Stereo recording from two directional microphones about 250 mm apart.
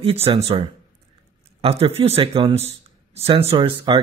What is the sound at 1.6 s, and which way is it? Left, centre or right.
Speech, right.